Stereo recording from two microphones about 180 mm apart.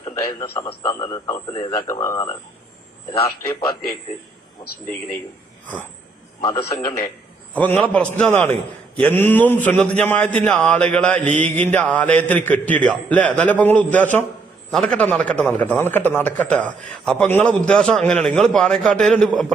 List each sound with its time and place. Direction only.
0.0 s a sound: 30° left (ahead or behind)
0.6 s speech: 25° left (ahead or behind)
6.4 s a man's voice: 15° left (ahead or behind)